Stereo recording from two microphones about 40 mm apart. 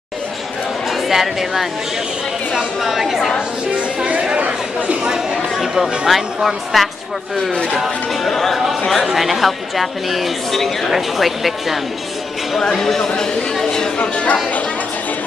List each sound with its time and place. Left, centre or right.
1.0 s a woman's voice: centre
3.7 s music: right
4.4 s chatter: right
5.0 s a sound: centre
7.7 s speech: centre
8.3 s speech: centre
12.5 s speech: centre
13.9 s speech: left